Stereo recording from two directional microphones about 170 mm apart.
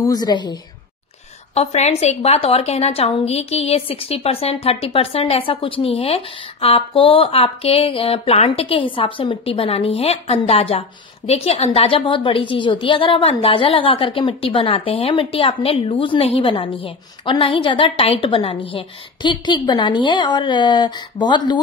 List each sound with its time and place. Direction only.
0.0 s a woman's voice: 25° left (ahead or behind)
1.5 s a woman's voice: 40° left (ahead or behind)